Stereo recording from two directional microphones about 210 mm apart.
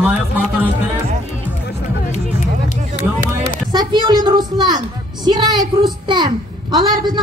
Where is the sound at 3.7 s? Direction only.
20° right (ahead or behind).